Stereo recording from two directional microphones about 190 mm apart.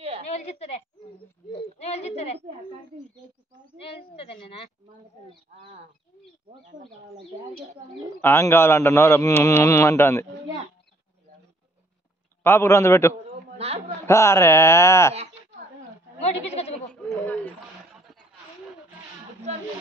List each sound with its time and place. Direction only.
0.3 s a woman's voice: 35° left (ahead or behind)
3.9 s a woman's voice: 25° left (ahead or behind)
8.2 s a man's voice: 10° left (ahead or behind)
12.4 s a man's voice: 15° left (ahead or behind)
13.6 s a man's voice: 35° right (ahead or behind)
14.0 s a man's voice: 15° left (ahead or behind)
16.2 s a woman's voice: 35° left (ahead or behind)
16.9 s a man's voice: 5° left (ahead or behind)